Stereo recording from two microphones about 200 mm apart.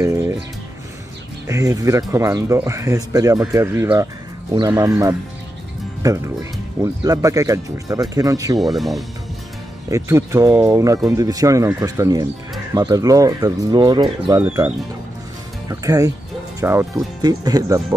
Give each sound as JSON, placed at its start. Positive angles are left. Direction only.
{"t": 0.0, "sound": "music", "side_deg": -15}
{"t": 1.5, "sound": "speech", "side_deg": -15}
{"t": 8.5, "sound": "speech", "side_deg": 0}
{"t": 9.8, "sound": "speech", "side_deg": -15}
{"t": 15.7, "sound": "speech", "side_deg": -15}